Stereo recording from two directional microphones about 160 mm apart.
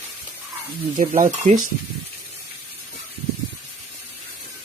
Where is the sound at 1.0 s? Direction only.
55° right (ahead or behind).